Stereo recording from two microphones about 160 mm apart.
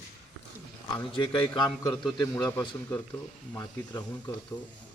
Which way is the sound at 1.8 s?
20° left (ahead or behind).